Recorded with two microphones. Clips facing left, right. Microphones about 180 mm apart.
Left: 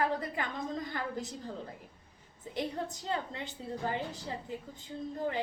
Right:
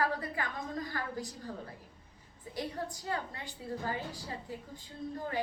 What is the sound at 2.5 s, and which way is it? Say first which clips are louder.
A woman's voice: left 2 dB; 20° left (ahead or behind).